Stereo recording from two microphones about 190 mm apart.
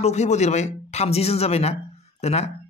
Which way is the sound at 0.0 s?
35° left (ahead or behind).